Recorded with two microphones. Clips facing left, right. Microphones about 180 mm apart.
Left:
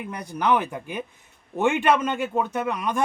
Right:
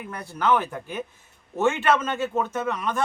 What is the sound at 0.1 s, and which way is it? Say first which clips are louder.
A man's voice: even; 15° left (ahead or behind).